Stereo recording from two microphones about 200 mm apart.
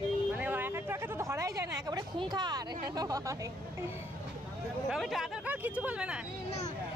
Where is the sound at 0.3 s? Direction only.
10° right (ahead or behind).